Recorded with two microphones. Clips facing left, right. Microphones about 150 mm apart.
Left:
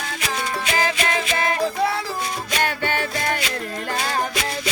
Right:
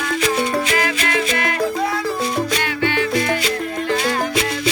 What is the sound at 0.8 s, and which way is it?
Music, 30° left (ahead or behind).